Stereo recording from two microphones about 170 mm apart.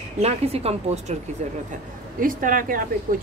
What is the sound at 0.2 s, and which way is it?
Speech, 40° right (ahead or behind).